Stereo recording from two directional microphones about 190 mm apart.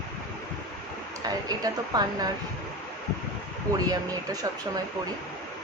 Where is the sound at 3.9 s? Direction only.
20° right (ahead or behind).